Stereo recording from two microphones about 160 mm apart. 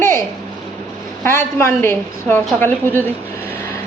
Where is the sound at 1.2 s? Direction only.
15° left (ahead or behind).